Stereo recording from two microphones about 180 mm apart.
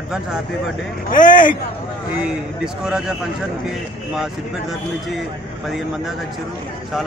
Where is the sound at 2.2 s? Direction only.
5° right (ahead or behind).